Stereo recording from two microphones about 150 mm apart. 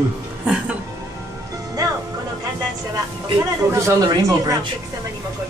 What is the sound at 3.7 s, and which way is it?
Speech, 20° right (ahead or behind).